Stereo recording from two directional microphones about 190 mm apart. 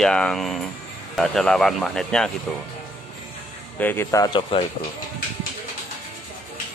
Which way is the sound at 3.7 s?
10° left (ahead or behind).